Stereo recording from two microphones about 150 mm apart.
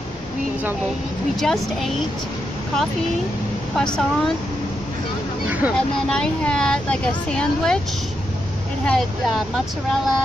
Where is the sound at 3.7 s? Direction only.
5° left (ahead or behind).